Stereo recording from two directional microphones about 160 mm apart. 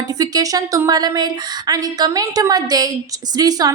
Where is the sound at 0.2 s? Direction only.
20° right (ahead or behind).